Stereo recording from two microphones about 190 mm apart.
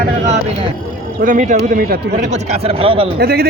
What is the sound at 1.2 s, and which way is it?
A man's voice, 45° right (ahead or behind).